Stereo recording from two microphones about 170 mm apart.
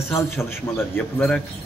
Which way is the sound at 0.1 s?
15° left (ahead or behind).